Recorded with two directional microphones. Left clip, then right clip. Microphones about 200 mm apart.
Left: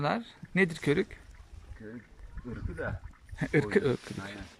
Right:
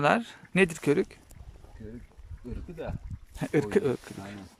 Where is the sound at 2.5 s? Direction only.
20° right (ahead or behind).